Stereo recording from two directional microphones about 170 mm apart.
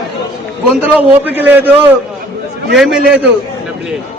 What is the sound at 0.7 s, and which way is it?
A man's voice, 5° right (ahead or behind).